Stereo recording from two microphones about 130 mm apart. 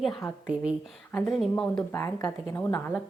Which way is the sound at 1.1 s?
5° left (ahead or behind).